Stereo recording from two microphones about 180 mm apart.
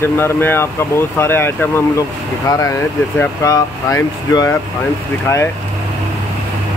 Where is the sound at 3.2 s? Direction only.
15° left (ahead or behind).